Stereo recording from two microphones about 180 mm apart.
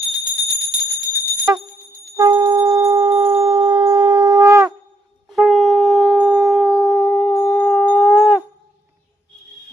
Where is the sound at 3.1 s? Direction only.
30° right (ahead or behind); by 4.7 s 15° right (ahead or behind).